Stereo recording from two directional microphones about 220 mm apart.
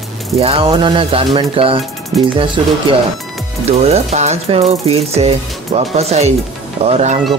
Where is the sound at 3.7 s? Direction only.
30° right (ahead or behind).